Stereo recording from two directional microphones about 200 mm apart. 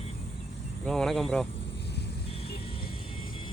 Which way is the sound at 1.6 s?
60° left (ahead or behind).